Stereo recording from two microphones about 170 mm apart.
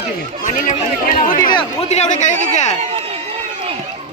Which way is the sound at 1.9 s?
45° left (ahead or behind).